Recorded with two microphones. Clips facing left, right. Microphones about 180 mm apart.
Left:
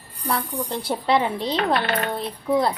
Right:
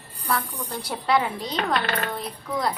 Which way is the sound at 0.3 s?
25° left (ahead or behind).